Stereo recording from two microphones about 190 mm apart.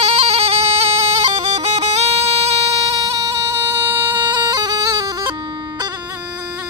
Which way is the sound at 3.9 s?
20° right (ahead or behind).